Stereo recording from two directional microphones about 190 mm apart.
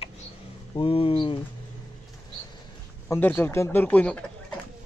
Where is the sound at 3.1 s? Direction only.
10° left (ahead or behind).